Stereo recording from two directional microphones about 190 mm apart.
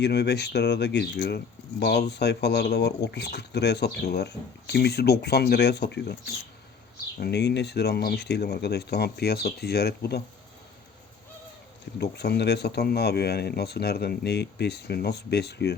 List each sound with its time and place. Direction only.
0.0 s speech: 60° left (ahead or behind)
7.2 s speech: 60° left (ahead or behind)
11.9 s speech: 60° left (ahead or behind)